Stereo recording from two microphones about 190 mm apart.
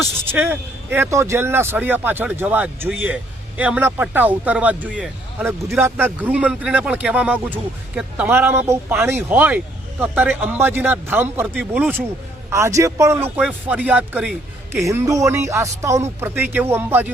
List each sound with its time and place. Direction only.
0.3 s speech: 10° right (ahead or behind)
14.8 s speech: 15° right (ahead or behind)